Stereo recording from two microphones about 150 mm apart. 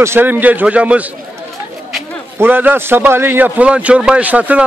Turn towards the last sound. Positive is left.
turn(degrees=-10)  # may be behind; listen again after turning